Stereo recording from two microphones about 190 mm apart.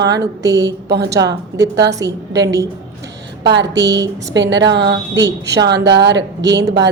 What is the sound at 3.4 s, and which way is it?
A woman's voice, 65° right (ahead or behind).